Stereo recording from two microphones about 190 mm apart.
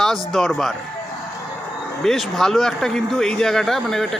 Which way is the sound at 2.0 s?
Centre (ahead or behind).